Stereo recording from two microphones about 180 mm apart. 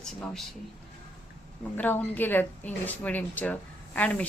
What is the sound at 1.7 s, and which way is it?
Speech, 10° left (ahead or behind).